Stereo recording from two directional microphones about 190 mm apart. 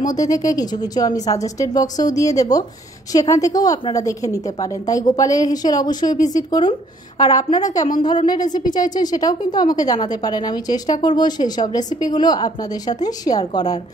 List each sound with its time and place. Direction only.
0.0 s a woman's voice: 20° left (ahead or behind)